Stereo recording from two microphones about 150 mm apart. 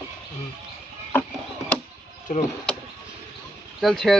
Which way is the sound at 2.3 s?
65° left (ahead or behind).